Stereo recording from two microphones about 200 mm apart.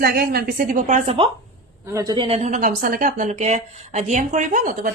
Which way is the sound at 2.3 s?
35° right (ahead or behind).